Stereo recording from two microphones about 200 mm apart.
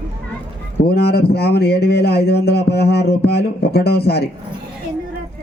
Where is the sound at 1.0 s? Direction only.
50° left (ahead or behind).